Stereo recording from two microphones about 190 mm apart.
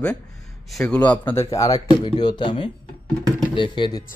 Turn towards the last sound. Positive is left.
turn(degrees=25)  # may be behind; listen again after turning